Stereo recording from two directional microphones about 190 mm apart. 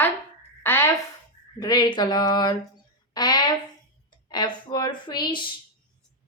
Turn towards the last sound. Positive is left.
turn(degrees=25)  # may be behind; listen again after turning